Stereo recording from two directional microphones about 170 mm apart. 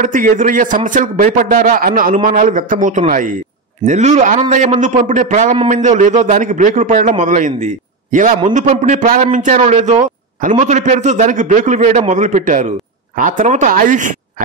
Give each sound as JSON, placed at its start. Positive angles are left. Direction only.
{"t": 0.0, "sound": "a man's voice", "side_deg": -50}